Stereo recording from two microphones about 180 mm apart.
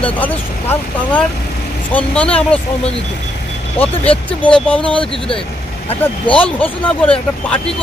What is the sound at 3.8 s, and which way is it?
Speech, 5° left (ahead or behind).